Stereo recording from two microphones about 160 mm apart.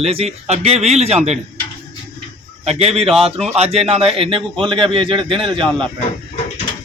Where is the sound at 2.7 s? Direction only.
40° right (ahead or behind).